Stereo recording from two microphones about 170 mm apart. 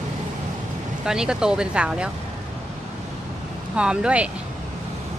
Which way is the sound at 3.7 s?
5° right (ahead or behind).